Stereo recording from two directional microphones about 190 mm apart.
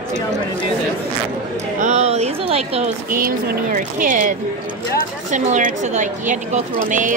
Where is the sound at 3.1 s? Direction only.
50° right (ahead or behind).